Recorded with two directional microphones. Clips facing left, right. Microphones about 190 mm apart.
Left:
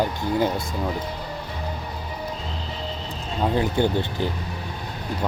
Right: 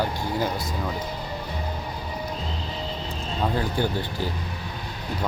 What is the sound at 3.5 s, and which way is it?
Speech, 25° left (ahead or behind).